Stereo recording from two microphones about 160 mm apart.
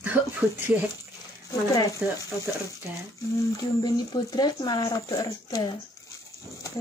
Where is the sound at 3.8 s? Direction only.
25° left (ahead or behind).